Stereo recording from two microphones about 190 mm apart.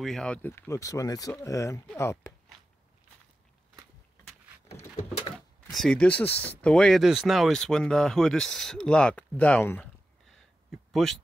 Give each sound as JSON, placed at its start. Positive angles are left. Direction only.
{"t": 0.0, "sound": "speech", "side_deg": 5}
{"t": 5.7, "sound": "speech", "side_deg": 0}
{"t": 10.2, "sound": "a sound", "side_deg": 0}